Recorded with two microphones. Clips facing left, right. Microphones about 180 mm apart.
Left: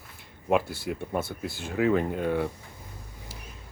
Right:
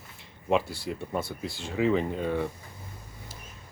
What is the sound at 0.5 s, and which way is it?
Speech, 5° left (ahead or behind).